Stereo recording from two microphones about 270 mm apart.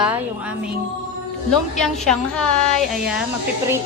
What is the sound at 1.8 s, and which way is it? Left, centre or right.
A woman's voice, centre.